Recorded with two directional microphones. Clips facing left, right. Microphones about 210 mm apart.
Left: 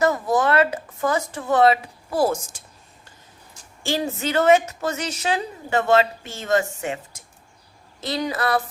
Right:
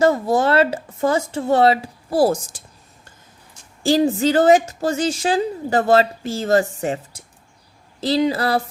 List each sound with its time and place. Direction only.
0.0 s speech: 30° right (ahead or behind)
3.8 s a woman's voice: 35° right (ahead or behind)